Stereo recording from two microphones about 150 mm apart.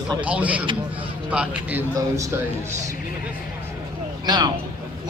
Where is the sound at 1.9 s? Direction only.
20° right (ahead or behind).